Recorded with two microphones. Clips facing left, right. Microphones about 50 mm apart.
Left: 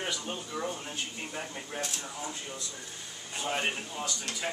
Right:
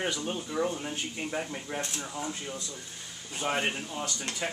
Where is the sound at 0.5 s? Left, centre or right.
Right.